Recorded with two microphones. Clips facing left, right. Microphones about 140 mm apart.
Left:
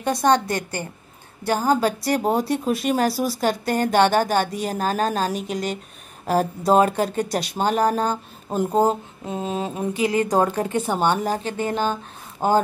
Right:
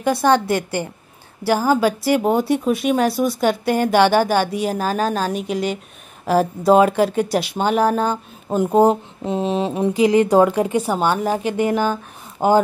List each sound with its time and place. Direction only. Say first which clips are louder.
0.2 s speech: even; 5° right (ahead or behind)
9.2 s a sound: right 7 dB; 25° right (ahead or behind)
10.2 s speech: right 6 dB; 10° right (ahead or behind)